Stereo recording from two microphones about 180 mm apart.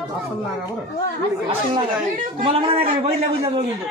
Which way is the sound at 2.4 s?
30° right (ahead or behind).